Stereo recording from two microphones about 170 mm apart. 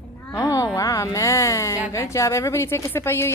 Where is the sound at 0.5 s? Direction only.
20° left (ahead or behind).